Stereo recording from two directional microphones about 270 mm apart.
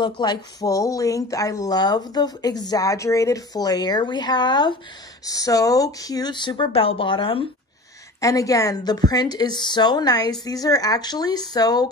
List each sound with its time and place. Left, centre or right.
0.0 s speech: centre